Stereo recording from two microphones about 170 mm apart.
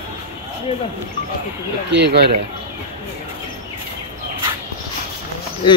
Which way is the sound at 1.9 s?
80° right.